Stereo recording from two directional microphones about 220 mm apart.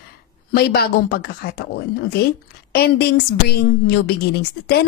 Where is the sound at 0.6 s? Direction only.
45° left (ahead or behind).